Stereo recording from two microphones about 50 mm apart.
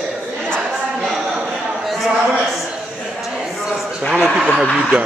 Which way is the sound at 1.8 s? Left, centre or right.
Centre.